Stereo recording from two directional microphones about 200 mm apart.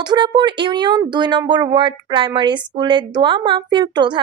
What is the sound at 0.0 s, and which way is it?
Speech, 20° right (ahead or behind).